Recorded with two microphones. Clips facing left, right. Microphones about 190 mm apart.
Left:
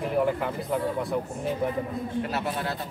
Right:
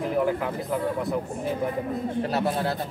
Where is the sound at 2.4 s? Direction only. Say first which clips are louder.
Right 4 dB; 35° right (ahead or behind).